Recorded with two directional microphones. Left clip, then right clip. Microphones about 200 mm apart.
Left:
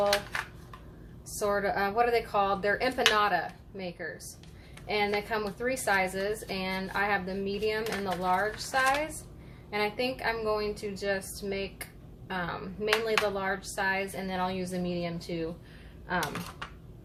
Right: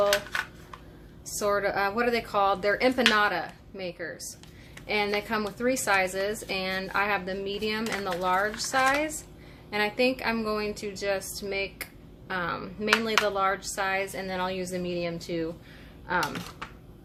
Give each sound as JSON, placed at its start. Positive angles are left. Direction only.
{"t": 1.4, "sound": "a woman's voice", "side_deg": -35}